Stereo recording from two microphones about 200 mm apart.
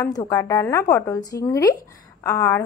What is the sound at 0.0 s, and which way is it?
A woman's voice, 15° left (ahead or behind).